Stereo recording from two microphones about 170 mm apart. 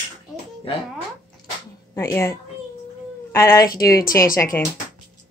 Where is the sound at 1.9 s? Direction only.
20° left (ahead or behind).